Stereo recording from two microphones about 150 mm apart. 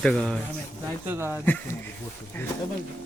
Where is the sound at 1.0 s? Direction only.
15° right (ahead or behind).